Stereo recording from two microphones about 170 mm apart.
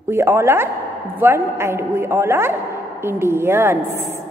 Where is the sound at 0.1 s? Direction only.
15° right (ahead or behind).